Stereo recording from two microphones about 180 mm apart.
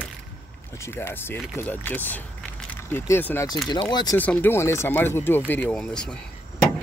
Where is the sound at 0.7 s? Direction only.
15° left (ahead or behind).